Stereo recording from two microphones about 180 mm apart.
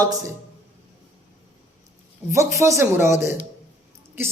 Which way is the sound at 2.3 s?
15° right (ahead or behind).